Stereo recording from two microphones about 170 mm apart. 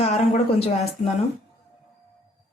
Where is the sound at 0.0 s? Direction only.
40° left (ahead or behind).